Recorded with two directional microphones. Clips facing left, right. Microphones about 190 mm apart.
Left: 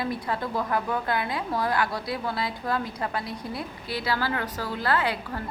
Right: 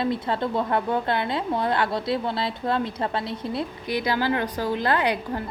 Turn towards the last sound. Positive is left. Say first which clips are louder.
# right 3 dB
turn(degrees=-20)  # may be behind; listen again after turning